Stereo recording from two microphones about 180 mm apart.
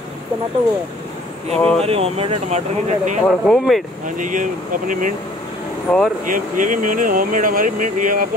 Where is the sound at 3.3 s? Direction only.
Centre (ahead or behind).